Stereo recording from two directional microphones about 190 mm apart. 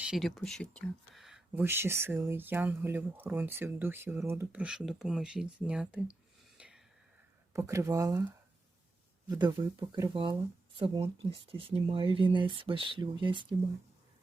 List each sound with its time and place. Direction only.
0.0 s speech: centre (ahead or behind)
6.6 s whispering: 5° right (ahead or behind)
7.5 s speech: 15° right (ahead or behind)
9.3 s speech: 20° right (ahead or behind)